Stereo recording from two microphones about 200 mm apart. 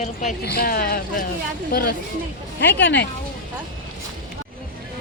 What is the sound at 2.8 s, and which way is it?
Speech, 60° left (ahead or behind).